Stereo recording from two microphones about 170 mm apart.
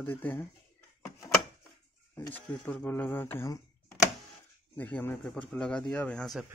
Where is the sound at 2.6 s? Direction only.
10° left (ahead or behind).